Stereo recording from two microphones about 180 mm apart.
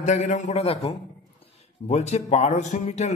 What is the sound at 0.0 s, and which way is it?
Speech, 40° left (ahead or behind).